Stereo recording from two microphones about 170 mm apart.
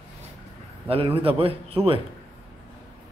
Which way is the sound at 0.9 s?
35° right (ahead or behind).